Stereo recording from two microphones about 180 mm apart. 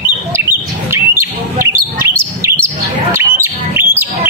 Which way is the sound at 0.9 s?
15° right (ahead or behind).